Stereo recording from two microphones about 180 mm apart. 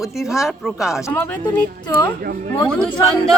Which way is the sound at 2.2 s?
50° right (ahead or behind).